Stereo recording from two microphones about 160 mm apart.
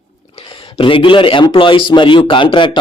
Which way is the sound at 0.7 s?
35° left (ahead or behind).